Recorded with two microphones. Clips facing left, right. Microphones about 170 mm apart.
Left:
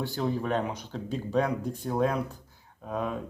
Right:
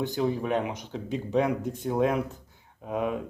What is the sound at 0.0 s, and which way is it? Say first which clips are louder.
Speech: right 2 dB; 15° right (ahead or behind).